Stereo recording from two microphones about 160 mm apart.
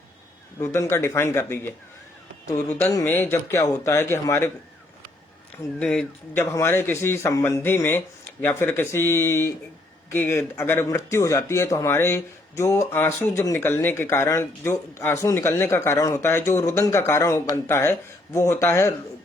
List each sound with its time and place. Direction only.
0.6 s speech: 15° left (ahead or behind)
5.8 s speech: 5° left (ahead or behind)
6.4 s speech: 20° left (ahead or behind)